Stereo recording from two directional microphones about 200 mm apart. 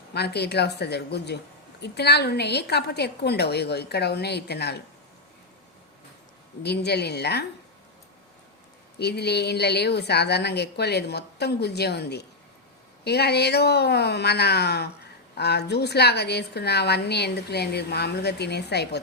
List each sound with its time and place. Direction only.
0.1 s a woman's voice: 55° left (ahead or behind)
6.6 s a woman's voice: 55° left (ahead or behind)
9.0 s a woman's voice: 55° left (ahead or behind)